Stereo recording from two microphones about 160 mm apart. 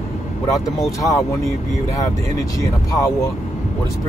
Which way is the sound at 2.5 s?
20° left (ahead or behind).